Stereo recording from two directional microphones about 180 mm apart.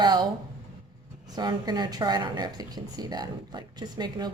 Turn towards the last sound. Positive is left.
turn(degrees=-25)  # may be behind; listen again after turning